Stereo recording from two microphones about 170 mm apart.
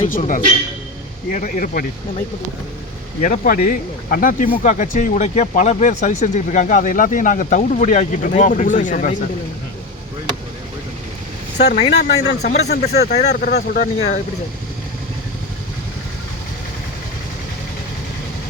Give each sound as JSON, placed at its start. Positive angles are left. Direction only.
{"t": 0.1, "sound": "speech", "side_deg": 50}
{"t": 3.2, "sound": "speech", "side_deg": 55}
{"t": 11.5, "sound": "speech", "side_deg": 80}
{"t": 11.9, "sound": "speech", "side_deg": 90}
{"t": 12.6, "sound": "speech", "side_deg": 70}
{"t": 13.0, "sound": "speech", "side_deg": 45}